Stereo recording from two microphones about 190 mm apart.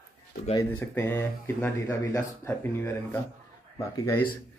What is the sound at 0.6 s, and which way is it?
Speech, 10° left (ahead or behind).